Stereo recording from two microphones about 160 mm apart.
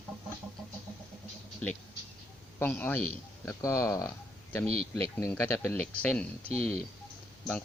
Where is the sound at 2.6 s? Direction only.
10° left (ahead or behind).